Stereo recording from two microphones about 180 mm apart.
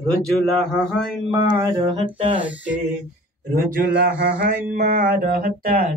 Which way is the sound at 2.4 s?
10° right (ahead or behind).